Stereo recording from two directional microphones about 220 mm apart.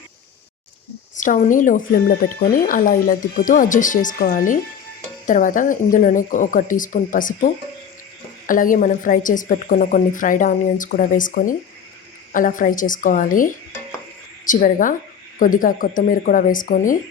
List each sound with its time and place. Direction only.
1.1 s speech: 35° left (ahead or behind)